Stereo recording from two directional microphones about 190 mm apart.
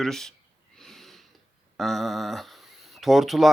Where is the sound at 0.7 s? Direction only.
Centre (ahead or behind).